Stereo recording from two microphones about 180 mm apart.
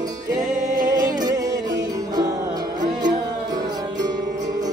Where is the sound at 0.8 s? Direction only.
20° right (ahead or behind).